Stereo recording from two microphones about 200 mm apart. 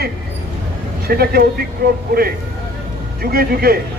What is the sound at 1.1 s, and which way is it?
Speech, 50° right (ahead or behind).